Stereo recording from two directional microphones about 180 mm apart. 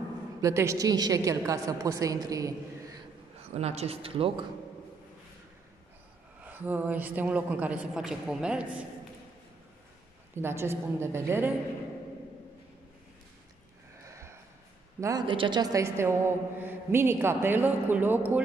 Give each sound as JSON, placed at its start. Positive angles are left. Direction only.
{"t": 0.4, "sound": "a woman's voice", "side_deg": -15}
{"t": 3.5, "sound": "speech", "side_deg": -35}
{"t": 6.4, "sound": "a woman's voice", "side_deg": -10}
{"t": 10.3, "sound": "a woman's voice", "side_deg": -15}
{"t": 14.0, "sound": "a sound", "side_deg": -15}
{"t": 15.0, "sound": "a woman's voice", "side_deg": -20}